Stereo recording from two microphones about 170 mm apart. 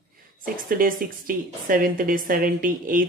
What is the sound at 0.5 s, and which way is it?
A woman's voice, 55° right (ahead or behind).